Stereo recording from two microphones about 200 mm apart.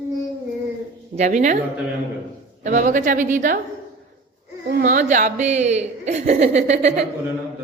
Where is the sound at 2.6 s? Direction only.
40° right (ahead or behind).